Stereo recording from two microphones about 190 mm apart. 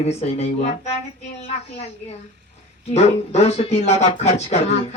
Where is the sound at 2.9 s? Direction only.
35° left (ahead or behind).